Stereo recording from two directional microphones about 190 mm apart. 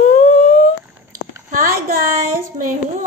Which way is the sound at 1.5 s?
50° right (ahead or behind).